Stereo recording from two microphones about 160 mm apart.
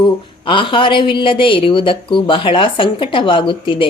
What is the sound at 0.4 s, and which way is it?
A woman's voice, 30° left (ahead or behind).